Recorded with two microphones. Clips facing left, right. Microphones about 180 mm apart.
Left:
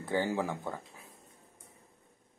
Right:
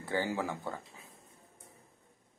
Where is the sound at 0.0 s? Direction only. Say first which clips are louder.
Left 2 dB; 15° left (ahead or behind).